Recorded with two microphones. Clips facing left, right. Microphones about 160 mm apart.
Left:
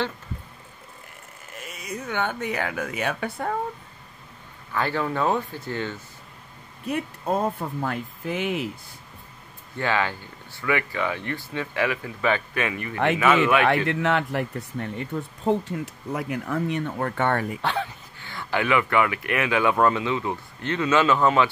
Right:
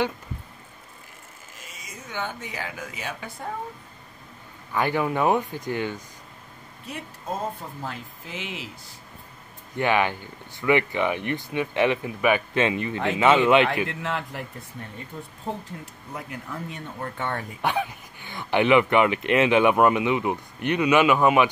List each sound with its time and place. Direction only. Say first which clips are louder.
1.6 s speech: left 10 dB; 60° left (ahead or behind)
4.7 s speech: right 2 dB; 15° right (ahead or behind)
6.9 s speech: left 7 dB; 60° left (ahead or behind)
9.8 s speech: right 3 dB; 15° right (ahead or behind)
13.8 s speech: left 7 dB; 70° left (ahead or behind)
17.6 s speech: right 1 dB; 15° right (ahead or behind)